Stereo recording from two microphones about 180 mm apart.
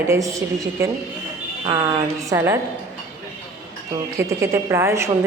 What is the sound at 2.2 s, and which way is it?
Speech, 15° right (ahead or behind).